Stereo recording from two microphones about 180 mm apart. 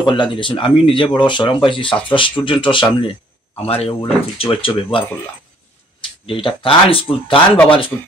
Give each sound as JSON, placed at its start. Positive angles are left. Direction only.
{"t": 0.0, "sound": "speech", "side_deg": 25}